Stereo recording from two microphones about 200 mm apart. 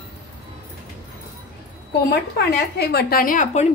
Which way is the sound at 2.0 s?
50° left (ahead or behind).